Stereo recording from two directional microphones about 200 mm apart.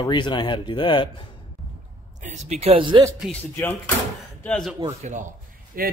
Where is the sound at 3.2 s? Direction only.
10° left (ahead or behind).